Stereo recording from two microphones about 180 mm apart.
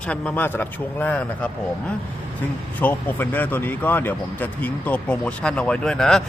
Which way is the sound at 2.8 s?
10° left (ahead or behind).